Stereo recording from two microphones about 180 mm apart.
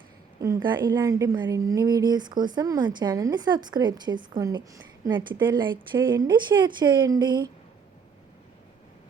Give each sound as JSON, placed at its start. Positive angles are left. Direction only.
{"t": 0.3, "sound": "a woman's voice", "side_deg": -20}